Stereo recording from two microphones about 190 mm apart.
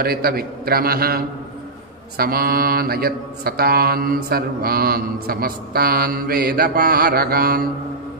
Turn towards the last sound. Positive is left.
turn(degrees=-55)  # may be behind; listen again after turning